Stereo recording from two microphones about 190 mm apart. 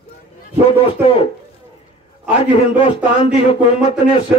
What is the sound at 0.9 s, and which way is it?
Speech, 30° left (ahead or behind).